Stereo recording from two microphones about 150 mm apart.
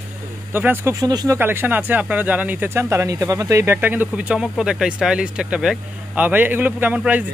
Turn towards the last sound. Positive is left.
turn(degrees=-10)  # may be behind; listen again after turning